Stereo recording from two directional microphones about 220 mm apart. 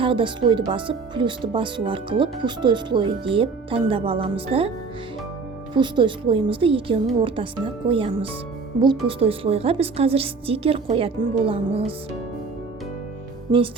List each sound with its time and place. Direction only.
0.0 s speech: 25° right (ahead or behind)
5.7 s speech: 20° right (ahead or behind)